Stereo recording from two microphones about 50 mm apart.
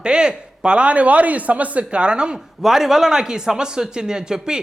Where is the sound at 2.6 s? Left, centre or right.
Centre.